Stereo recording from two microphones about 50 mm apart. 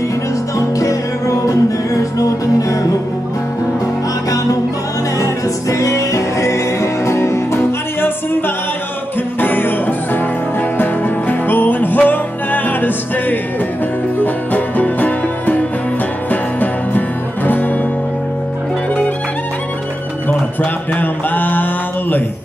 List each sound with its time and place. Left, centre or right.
0.7 s music: left
5.2 s music: left
9.4 s music: left
21.0 s mantra: left